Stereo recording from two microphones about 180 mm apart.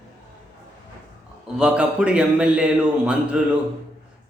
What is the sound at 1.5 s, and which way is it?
A man's voice, 5° right (ahead or behind).